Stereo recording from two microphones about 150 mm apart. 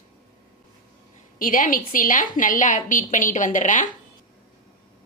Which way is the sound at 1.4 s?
65° left (ahead or behind).